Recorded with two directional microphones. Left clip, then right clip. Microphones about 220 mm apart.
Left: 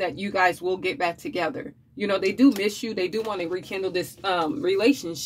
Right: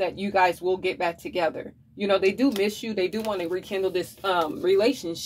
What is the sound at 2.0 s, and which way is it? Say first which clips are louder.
Speech: even; 25° left (ahead or behind).